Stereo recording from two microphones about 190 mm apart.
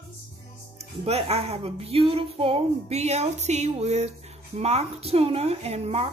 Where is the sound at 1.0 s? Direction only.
35° right (ahead or behind).